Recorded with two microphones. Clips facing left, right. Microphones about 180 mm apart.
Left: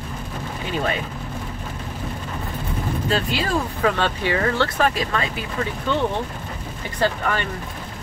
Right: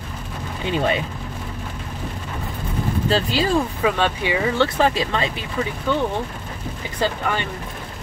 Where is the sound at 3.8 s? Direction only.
15° right (ahead or behind).